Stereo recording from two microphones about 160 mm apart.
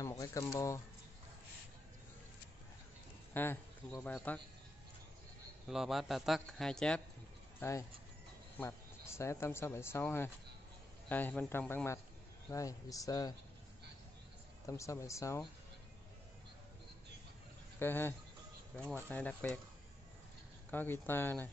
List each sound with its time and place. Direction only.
0.0 s speech: 20° left (ahead or behind)
3.3 s speech: 15° left (ahead or behind)
5.7 s a man's voice: centre (ahead or behind)
8.5 s speech: 15° left (ahead or behind)
14.7 s speech: 20° left (ahead or behind)
17.7 s speech: 15° left (ahead or behind)
20.7 s speech: 10° left (ahead or behind)